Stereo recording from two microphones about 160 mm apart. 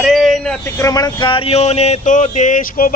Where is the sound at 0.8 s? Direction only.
20° left (ahead or behind).